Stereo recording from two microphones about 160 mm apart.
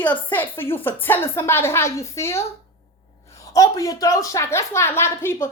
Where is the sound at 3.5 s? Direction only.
20° left (ahead or behind).